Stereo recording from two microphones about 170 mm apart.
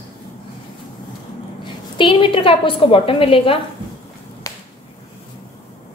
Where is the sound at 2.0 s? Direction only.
30° left (ahead or behind).